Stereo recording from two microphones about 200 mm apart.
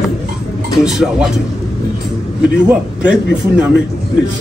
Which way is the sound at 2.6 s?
5° right (ahead or behind).